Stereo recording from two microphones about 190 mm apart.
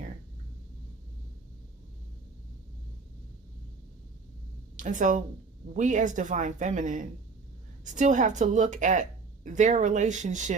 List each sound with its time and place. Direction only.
4.8 s speech: 40° right (ahead or behind)